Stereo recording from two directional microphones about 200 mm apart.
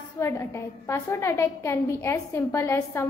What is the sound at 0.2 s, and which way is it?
A woman's voice, 15° left (ahead or behind).